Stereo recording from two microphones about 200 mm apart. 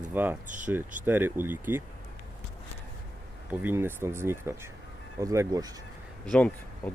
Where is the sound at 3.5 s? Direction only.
10° right (ahead or behind).